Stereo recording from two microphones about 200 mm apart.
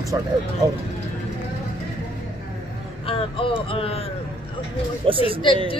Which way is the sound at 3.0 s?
25° left (ahead or behind).